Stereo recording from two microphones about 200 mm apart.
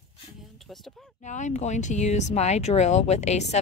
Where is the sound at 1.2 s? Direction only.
35° left (ahead or behind).